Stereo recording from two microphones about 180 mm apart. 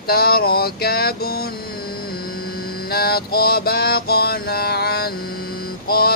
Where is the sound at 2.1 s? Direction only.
55° left (ahead or behind).